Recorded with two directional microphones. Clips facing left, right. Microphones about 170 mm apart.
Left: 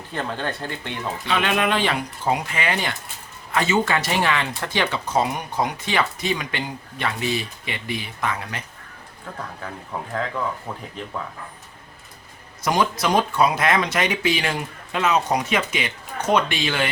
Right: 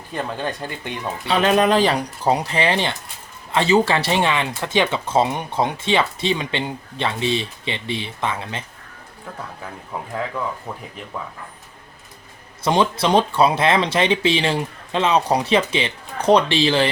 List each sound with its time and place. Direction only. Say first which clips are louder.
0.1 s speech: right 2 dB; 15° right (ahead or behind)
1.3 s speech: right 6 dB; 35° right (ahead or behind)
12.6 s speech: right 3 dB; 25° right (ahead or behind)